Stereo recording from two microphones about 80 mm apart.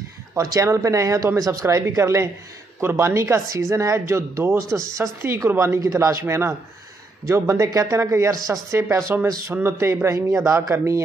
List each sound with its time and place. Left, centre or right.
0.5 s speech: right
8.7 s speech: right
10.0 s speech: right